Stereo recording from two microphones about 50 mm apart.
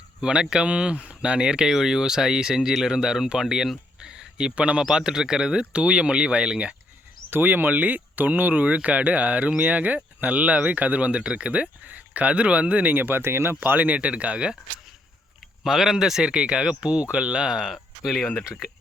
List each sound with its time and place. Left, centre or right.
0.2 s speech: centre
4.0 s a sound: centre
4.8 s speech: centre
7.3 s speech: right
12.9 s speech: right
13.7 s speech: right
15.6 s speech: centre